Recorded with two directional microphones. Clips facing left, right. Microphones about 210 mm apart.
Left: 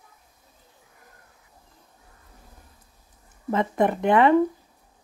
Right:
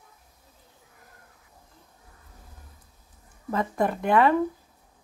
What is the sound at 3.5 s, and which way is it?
Speech, 20° left (ahead or behind).